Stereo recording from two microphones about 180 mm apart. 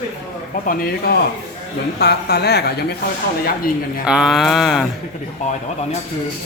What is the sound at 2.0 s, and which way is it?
Speech, 65° left (ahead or behind).